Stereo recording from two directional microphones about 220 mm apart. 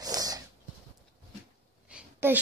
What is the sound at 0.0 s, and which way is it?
Snort, 15° right (ahead or behind).